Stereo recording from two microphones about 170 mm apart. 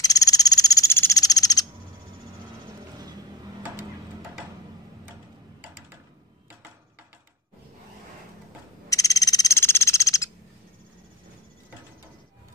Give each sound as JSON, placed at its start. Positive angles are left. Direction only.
{"t": 0.0, "sound": "frog", "side_deg": 20}
{"t": 8.8, "sound": "frog", "side_deg": 20}